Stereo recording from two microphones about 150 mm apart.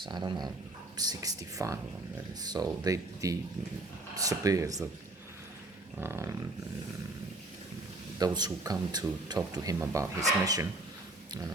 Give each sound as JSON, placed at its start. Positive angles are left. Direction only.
{"t": 0.0, "sound": "speech", "side_deg": -30}
{"t": 6.0, "sound": "roaring cats", "side_deg": -15}
{"t": 8.2, "sound": "speech", "side_deg": -25}